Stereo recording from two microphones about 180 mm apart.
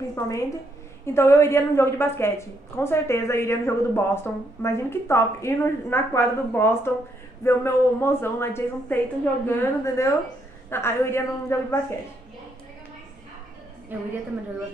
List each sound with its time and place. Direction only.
0.1 s a woman's voice: 15° left (ahead or behind)